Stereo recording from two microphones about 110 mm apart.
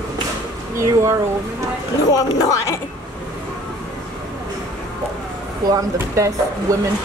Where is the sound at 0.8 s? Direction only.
25° right (ahead or behind).